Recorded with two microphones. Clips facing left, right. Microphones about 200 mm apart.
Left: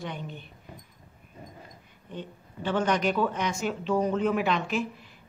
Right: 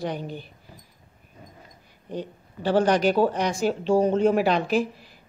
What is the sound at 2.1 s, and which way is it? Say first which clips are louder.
Speech: right 6 dB; 35° right (ahead or behind).